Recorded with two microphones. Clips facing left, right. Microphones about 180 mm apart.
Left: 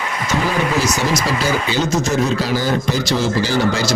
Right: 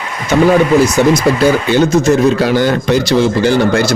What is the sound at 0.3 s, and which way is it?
Speech, 60° right (ahead or behind).